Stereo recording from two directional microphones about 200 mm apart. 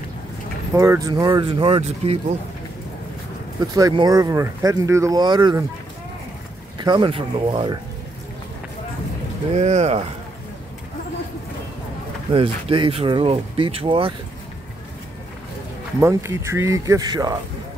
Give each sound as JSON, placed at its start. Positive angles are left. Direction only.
{"t": 0.7, "sound": "speech", "side_deg": -15}
{"t": 3.7, "sound": "speech", "side_deg": -20}
{"t": 6.8, "sound": "speech", "side_deg": -20}
{"t": 9.5, "sound": "speech", "side_deg": -35}
{"t": 12.3, "sound": "speech", "side_deg": -25}
{"t": 16.0, "sound": "speech", "side_deg": -15}